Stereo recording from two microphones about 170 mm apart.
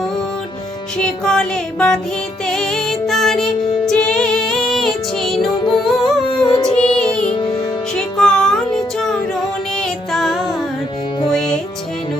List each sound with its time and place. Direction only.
0.9 s music: 5° left (ahead or behind)
6.2 s music: 25° left (ahead or behind)
6.7 s music: 5° left (ahead or behind)